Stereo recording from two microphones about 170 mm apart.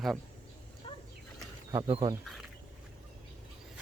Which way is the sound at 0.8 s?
30° left (ahead or behind).